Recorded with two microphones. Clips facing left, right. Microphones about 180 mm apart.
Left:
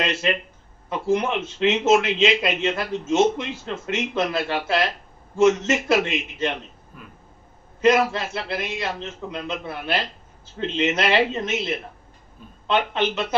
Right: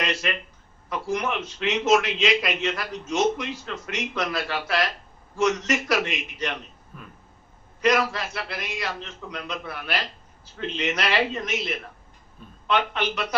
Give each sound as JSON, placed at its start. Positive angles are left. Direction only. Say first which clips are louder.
{"t": 0.0, "sound": "a man's voice", "louder": "left 4 dB", "side_deg": 25}
{"t": 7.8, "sound": "a man's voice", "louder": "left 4 dB", "side_deg": 25}